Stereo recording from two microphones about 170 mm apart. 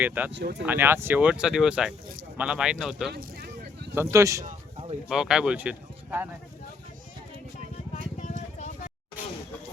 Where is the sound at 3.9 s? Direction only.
15° right (ahead or behind).